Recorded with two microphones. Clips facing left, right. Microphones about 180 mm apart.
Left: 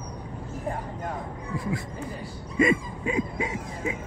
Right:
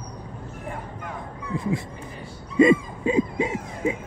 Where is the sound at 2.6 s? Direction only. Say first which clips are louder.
Right 6 dB; 30° right (ahead or behind).